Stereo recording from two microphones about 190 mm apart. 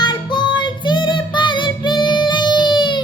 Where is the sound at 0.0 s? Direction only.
25° left (ahead or behind).